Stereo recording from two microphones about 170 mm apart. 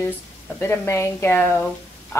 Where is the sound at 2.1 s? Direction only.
15° left (ahead or behind).